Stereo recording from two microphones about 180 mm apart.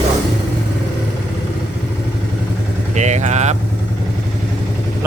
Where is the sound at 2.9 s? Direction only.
40° right (ahead or behind).